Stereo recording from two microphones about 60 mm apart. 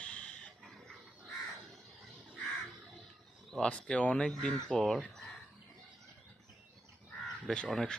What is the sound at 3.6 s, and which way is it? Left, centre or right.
Speech, centre.